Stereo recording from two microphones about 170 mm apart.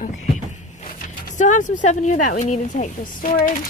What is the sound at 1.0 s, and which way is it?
Speech, 45° left (ahead or behind).